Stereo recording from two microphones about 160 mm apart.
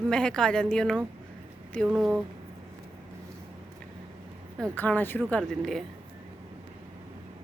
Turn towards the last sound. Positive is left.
turn(degrees=0)  # may be behind; listen again after turning